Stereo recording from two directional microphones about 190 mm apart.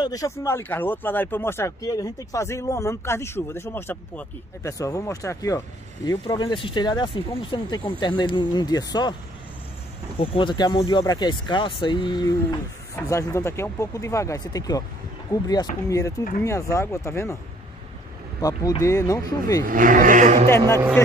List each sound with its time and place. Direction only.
0.0 s speech: 20° left (ahead or behind)
10.1 s speech: 25° left (ahead or behind)
18.4 s speech: 20° left (ahead or behind)
19.6 s speech: 45° right (ahead or behind)
20.4 s speech: 15° left (ahead or behind)